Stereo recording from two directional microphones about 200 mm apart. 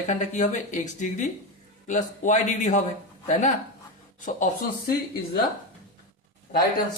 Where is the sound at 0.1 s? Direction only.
35° left (ahead or behind).